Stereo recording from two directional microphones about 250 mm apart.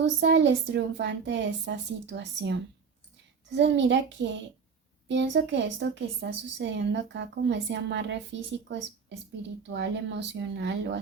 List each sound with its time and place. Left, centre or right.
0.0 s a woman's voice: right